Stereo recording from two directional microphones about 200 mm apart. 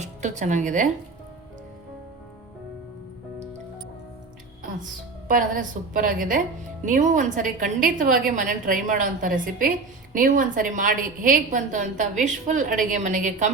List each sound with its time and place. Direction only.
0.0 s speech: 35° right (ahead or behind)
5.3 s a woman's voice: 40° right (ahead or behind)